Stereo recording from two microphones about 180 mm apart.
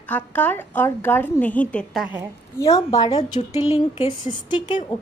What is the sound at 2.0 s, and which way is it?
Speech, 10° right (ahead or behind).